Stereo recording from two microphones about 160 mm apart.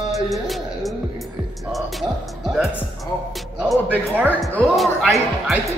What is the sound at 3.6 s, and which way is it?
Speech, 5° right (ahead or behind).